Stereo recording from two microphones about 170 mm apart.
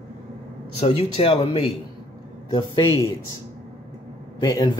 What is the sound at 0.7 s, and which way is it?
Speech, 40° left (ahead or behind).